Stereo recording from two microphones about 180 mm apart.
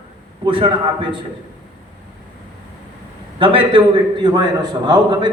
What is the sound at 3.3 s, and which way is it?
A man's voice, 30° right (ahead or behind).